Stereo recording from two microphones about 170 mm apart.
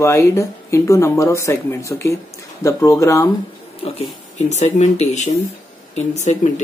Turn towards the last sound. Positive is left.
turn(degrees=45)  # may be behind; listen again after turning